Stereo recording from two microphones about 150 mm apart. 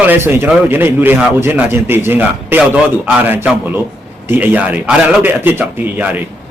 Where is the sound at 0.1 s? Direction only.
15° right (ahead or behind).